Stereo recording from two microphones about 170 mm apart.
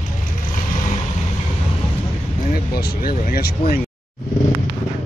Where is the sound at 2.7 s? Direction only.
60° left (ahead or behind).